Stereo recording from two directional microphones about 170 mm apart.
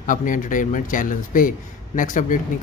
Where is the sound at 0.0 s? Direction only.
50° left (ahead or behind).